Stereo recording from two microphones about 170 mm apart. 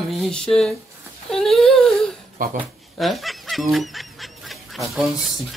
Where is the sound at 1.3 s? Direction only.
Centre (ahead or behind).